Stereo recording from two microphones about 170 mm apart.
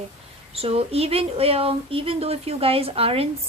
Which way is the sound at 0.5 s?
35° right (ahead or behind).